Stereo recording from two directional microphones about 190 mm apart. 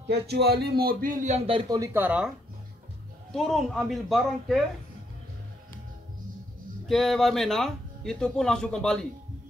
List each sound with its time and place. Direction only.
0.1 s speech: 60° right (ahead or behind); by 1.9 s 25° right (ahead or behind)
2.0 s speech: 5° right (ahead or behind)
6.9 s speech: centre (ahead or behind)